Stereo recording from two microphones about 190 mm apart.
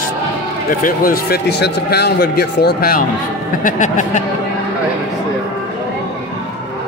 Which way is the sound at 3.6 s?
40° left (ahead or behind).